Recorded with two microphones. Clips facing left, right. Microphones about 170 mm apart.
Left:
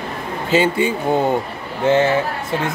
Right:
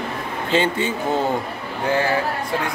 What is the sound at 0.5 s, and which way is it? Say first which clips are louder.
Speech: left 4 dB; 10° left (ahead or behind).